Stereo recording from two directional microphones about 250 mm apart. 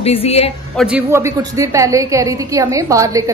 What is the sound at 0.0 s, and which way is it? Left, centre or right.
Speech, left.